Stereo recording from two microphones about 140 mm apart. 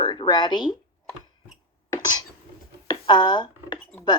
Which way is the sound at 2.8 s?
30° left (ahead or behind).